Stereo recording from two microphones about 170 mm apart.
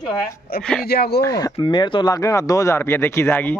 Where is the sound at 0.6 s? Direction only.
5° left (ahead or behind).